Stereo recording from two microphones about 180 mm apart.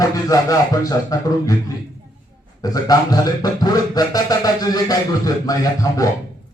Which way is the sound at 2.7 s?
20° left (ahead or behind).